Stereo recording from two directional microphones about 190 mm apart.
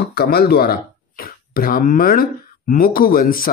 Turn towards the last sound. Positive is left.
turn(degrees=50)  # may be behind; listen again after turning